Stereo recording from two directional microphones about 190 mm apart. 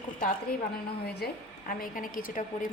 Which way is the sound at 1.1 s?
50° left (ahead or behind).